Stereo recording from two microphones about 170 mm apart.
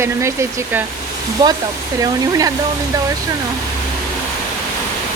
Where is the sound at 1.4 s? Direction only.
25° right (ahead or behind).